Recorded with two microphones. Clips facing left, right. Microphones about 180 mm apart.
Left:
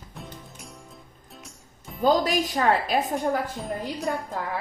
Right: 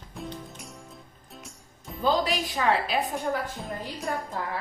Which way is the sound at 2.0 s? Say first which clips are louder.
Left 4 dB; 45° left (ahead or behind).